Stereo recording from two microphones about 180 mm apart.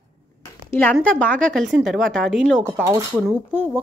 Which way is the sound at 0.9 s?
5° left (ahead or behind).